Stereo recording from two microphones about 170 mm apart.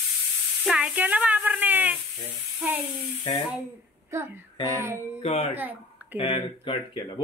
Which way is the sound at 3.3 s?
35° left (ahead or behind).